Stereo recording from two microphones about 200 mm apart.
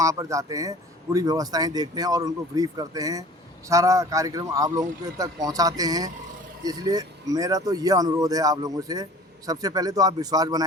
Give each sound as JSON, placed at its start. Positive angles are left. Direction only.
{"t": 0.0, "sound": "speech", "side_deg": -15}